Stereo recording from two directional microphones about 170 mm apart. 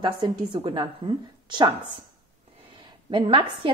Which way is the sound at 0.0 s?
25° right (ahead or behind).